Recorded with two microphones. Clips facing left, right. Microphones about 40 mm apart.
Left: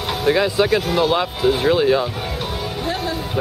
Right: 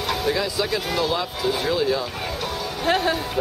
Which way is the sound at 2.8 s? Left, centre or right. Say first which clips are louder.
Right 5 dB; right.